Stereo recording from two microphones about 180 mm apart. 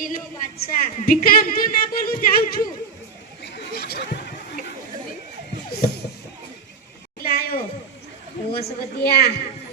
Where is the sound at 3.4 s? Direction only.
65° left (ahead or behind).